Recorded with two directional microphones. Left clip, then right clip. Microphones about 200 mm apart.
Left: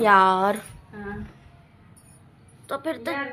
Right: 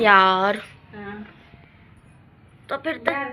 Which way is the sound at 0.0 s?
15° left (ahead or behind).